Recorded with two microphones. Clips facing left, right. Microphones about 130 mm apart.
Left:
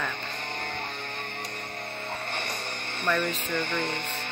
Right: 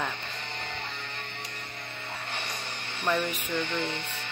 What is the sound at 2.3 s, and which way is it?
Music, 50° left (ahead or behind).